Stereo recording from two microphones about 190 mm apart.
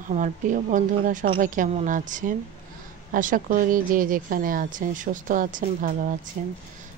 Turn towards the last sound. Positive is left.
turn(degrees=-45)  # may be behind; listen again after turning